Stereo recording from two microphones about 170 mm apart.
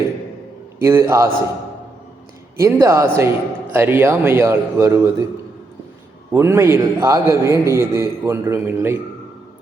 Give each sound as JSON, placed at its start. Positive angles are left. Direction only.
{"t": 0.8, "sound": "a man's voice", "side_deg": -15}
{"t": 2.6, "sound": "a man's voice", "side_deg": -15}
{"t": 6.3, "sound": "a man's voice", "side_deg": -15}